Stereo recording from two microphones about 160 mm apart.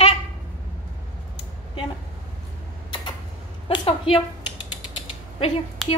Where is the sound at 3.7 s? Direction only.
35° left (ahead or behind).